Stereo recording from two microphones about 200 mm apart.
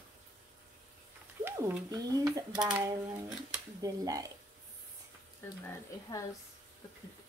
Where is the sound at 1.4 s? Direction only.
15° right (ahead or behind).